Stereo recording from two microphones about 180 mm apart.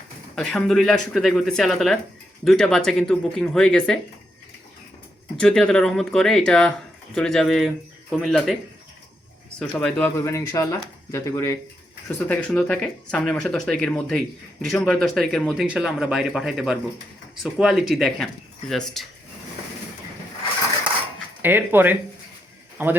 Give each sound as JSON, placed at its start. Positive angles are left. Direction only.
{"t": 0.3, "sound": "speech", "side_deg": 0}
{"t": 5.4, "sound": "speech", "side_deg": 5}
{"t": 9.6, "sound": "speech", "side_deg": 5}
{"t": 21.4, "sound": "speech", "side_deg": -10}